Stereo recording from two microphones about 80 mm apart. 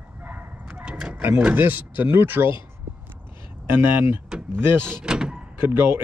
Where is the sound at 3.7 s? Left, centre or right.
Right.